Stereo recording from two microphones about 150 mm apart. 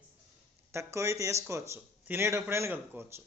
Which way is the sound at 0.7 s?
20° right (ahead or behind).